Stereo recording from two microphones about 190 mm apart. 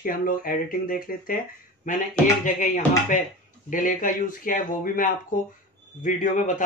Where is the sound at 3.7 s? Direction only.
45° left (ahead or behind).